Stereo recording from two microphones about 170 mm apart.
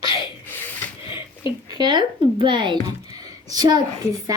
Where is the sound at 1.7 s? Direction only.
25° right (ahead or behind).